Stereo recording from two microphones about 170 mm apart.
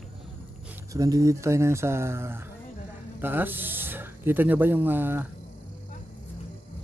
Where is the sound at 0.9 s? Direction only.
20° right (ahead or behind).